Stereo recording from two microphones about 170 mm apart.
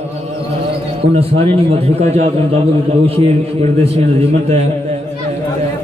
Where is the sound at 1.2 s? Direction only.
35° right (ahead or behind).